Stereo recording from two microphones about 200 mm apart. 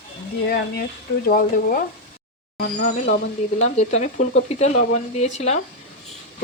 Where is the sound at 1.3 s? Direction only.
45° left (ahead or behind).